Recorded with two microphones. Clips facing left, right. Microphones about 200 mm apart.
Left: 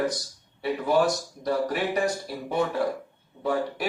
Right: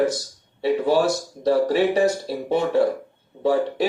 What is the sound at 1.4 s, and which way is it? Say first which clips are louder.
Speech: right 8 dB; 30° right (ahead or behind).